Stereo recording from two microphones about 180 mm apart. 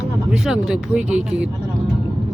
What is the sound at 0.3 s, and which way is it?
Speech, 5° right (ahead or behind).